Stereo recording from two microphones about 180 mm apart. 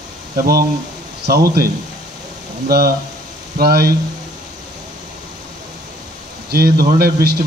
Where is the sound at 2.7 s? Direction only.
60° right (ahead or behind).